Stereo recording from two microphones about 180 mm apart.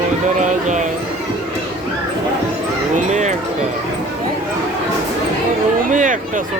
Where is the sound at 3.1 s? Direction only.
40° right (ahead or behind).